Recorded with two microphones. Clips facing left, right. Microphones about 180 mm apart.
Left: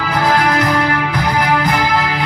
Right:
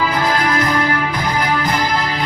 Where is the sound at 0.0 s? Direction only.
60° left (ahead or behind).